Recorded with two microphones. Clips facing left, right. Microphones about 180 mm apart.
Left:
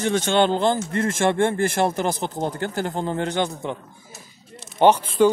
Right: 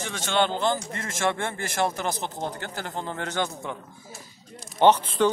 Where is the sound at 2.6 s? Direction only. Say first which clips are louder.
Left 8 dB; 45° left (ahead or behind).